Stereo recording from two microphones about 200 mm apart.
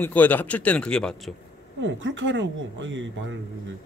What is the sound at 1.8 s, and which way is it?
Speech, 70° right (ahead or behind).